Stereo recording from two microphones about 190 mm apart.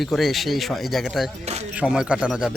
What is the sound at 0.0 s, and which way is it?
A man's voice, centre (ahead or behind).